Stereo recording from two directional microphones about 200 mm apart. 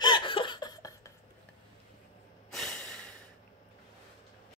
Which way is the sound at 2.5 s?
Centre (ahead or behind).